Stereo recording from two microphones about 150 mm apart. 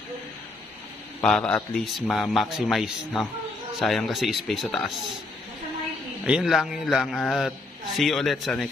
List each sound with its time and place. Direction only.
1.2 s a man's voice: 5° left (ahead or behind)
6.2 s a man's voice: 5° right (ahead or behind)